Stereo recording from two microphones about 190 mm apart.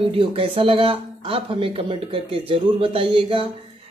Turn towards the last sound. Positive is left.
turn(degrees=-30)  # may be behind; listen again after turning